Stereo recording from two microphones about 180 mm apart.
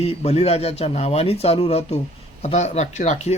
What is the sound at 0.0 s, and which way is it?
Speech, 35° left (ahead or behind).